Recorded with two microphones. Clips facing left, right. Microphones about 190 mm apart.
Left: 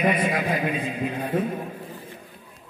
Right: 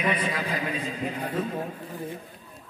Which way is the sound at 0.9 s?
65° left (ahead or behind).